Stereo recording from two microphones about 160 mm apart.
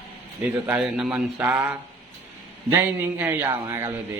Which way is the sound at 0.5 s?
10° right (ahead or behind).